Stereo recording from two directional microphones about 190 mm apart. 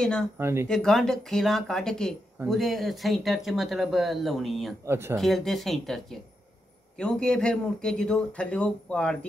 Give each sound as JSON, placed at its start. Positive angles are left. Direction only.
{"t": 0.4, "sound": "speech", "side_deg": -15}
{"t": 0.7, "sound": "speech", "side_deg": 5}
{"t": 4.8, "sound": "speech", "side_deg": -15}
{"t": 5.1, "sound": "speech", "side_deg": 0}